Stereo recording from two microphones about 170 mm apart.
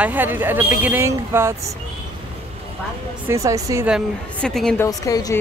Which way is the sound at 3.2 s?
20° right (ahead or behind).